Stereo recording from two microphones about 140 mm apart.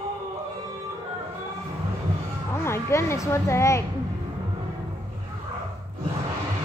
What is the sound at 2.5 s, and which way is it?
Speech, 20° left (ahead or behind).